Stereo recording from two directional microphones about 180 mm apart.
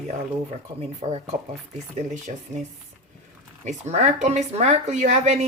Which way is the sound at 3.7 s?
40° right (ahead or behind).